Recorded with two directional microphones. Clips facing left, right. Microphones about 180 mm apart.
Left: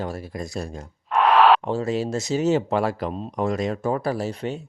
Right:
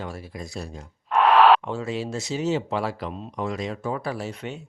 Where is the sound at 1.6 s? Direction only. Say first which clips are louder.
Left 5 dB; 40° left (ahead or behind).